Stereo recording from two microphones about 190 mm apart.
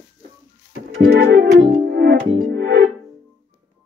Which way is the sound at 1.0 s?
55° right (ahead or behind).